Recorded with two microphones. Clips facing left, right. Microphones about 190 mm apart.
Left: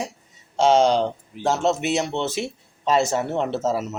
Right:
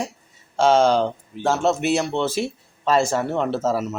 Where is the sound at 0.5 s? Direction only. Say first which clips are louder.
Right 1 dB; 20° left (ahead or behind).